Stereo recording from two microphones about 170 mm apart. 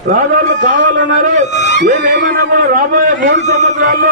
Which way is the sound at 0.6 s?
50° right (ahead or behind).